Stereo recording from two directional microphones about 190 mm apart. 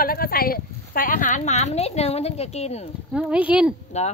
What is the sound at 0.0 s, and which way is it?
A woman's voice, 50° left (ahead or behind).